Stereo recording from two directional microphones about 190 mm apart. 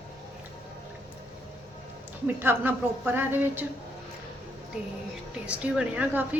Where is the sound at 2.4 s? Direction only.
10° right (ahead or behind).